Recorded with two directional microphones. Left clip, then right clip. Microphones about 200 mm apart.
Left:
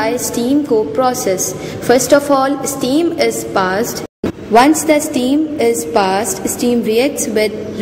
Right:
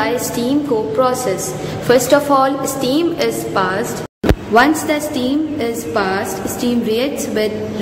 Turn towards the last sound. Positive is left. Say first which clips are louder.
# left 3 dB
turn(degrees=35)  # may be behind; listen again after turning